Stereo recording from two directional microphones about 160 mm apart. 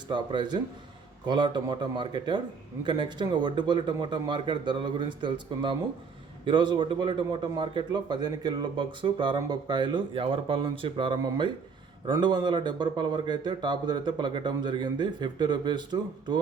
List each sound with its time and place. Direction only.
0.1 s a man's voice: 30° right (ahead or behind)